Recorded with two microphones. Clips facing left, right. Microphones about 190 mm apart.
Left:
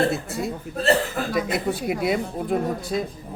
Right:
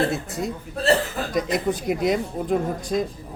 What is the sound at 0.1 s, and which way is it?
Speech, centre (ahead or behind).